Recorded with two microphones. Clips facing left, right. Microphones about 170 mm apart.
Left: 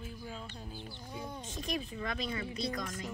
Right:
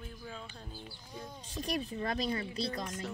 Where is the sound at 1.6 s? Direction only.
35° right (ahead or behind).